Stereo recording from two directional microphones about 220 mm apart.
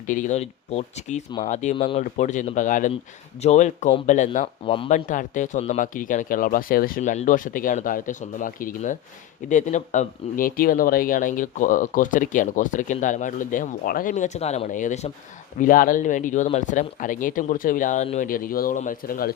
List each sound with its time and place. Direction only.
0.1 s speech: 35° left (ahead or behind)